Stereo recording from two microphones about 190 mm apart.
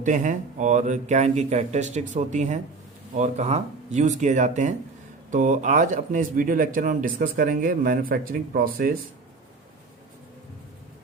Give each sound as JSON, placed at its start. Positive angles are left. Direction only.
{"t": 0.0, "sound": "speech", "side_deg": -40}